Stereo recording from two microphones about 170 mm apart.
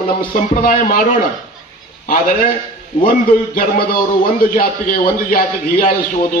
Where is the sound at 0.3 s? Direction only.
55° left (ahead or behind).